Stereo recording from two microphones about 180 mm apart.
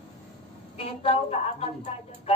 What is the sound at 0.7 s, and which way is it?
Speech, 35° left (ahead or behind).